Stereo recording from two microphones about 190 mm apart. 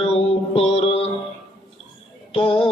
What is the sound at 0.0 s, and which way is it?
Mantra, 35° left (ahead or behind).